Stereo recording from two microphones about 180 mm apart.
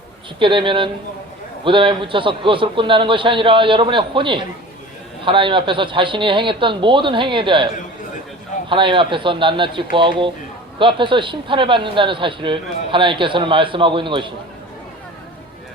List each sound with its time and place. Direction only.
0.3 s speech: 30° right (ahead or behind)
8.7 s speech: 30° right (ahead or behind)